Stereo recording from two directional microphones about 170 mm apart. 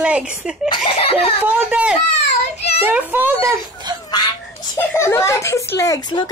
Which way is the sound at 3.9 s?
25° right (ahead or behind).